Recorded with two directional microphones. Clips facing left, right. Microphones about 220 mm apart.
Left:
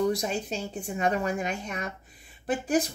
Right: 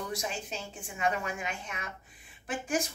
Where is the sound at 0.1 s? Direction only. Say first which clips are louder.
Left 7 dB; 35° left (ahead or behind).